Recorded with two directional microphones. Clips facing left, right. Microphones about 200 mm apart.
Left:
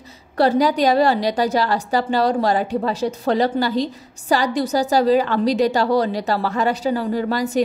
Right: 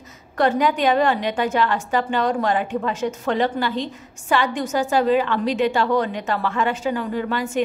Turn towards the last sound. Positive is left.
turn(degrees=40)  # may be behind; listen again after turning